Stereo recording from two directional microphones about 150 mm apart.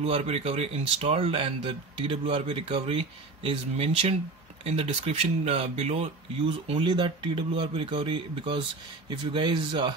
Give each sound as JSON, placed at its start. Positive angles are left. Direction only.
{"t": 0.0, "sound": "speech", "side_deg": -45}
{"t": 6.4, "sound": "speech", "side_deg": -35}